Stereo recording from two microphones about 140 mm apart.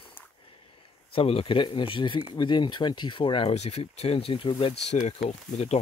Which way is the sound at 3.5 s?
50° left (ahead or behind).